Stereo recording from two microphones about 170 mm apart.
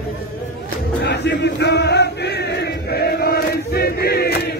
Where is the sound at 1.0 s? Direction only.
90° left.